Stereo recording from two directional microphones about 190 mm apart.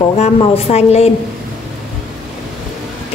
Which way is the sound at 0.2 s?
35° left (ahead or behind).